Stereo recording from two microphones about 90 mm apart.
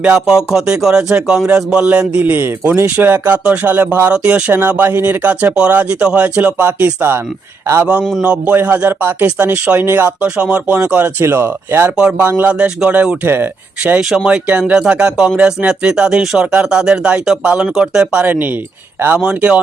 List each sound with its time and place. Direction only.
0.0 s music: 10° right (ahead or behind)
8.2 s speech: 15° right (ahead or behind)
10.2 s music: 15° right (ahead or behind)
11.9 s music: 10° right (ahead or behind)
12.2 s music: 20° right (ahead or behind)